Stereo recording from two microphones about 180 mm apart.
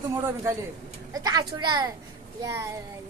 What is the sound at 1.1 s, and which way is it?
Speech, 20° right (ahead or behind).